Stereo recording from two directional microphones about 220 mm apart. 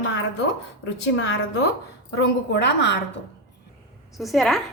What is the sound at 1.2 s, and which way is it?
Speech, 55° left (ahead or behind).